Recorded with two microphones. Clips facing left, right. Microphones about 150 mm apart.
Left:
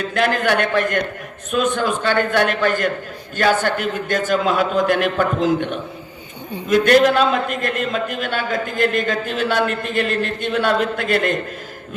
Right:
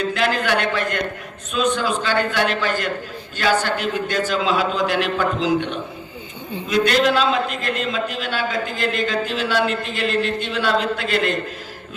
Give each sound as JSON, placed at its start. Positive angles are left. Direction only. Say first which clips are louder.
{"t": 0.0, "sound": "a man's voice", "louder": "left 2 dB", "side_deg": 50}
{"t": 6.7, "sound": "a man's voice", "louder": "left 4 dB", "side_deg": 50}